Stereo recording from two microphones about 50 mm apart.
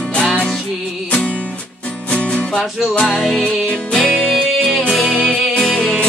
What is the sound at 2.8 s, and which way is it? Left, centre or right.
Music, centre.